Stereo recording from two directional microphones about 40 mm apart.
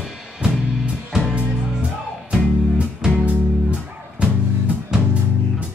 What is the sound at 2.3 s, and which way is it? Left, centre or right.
Music, right.